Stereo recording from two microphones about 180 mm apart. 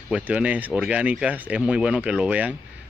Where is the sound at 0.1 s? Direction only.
5° right (ahead or behind).